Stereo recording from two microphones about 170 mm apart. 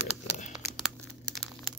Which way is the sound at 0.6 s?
Centre (ahead or behind).